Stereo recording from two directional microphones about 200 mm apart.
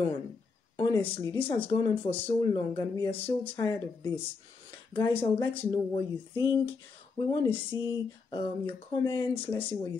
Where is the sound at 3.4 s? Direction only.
25° left (ahead or behind).